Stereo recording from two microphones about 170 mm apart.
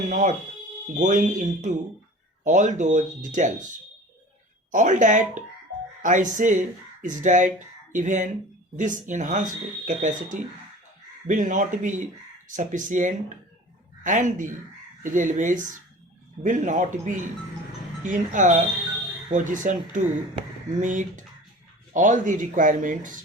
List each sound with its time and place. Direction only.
0.1 s speech: 50° right (ahead or behind)